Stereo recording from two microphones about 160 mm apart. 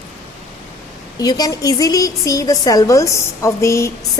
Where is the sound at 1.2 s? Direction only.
25° left (ahead or behind).